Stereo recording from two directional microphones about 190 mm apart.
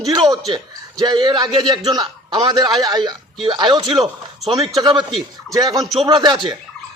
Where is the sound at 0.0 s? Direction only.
20° right (ahead or behind).